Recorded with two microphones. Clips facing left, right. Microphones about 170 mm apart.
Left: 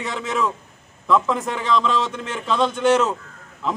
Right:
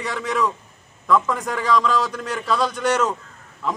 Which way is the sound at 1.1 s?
Centre (ahead or behind).